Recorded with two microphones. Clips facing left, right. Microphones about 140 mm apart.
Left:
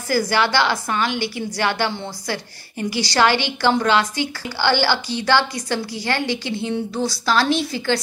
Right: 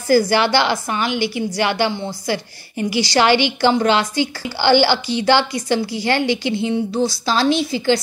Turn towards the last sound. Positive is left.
turn(degrees=-20)  # may be behind; listen again after turning